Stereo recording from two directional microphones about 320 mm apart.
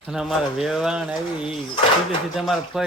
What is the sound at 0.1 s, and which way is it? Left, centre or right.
Speech, centre.